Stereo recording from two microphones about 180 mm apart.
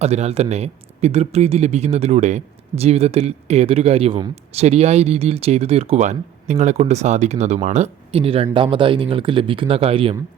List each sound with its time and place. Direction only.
0.0 s speech: 35° right (ahead or behind)